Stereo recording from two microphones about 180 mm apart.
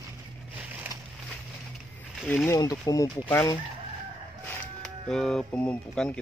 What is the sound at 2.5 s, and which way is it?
Speech, 20° left (ahead or behind).